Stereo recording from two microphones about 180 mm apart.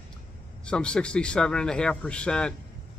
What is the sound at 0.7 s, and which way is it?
Speech, 5° left (ahead or behind).